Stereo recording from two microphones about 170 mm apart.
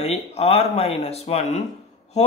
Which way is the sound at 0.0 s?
35° left (ahead or behind).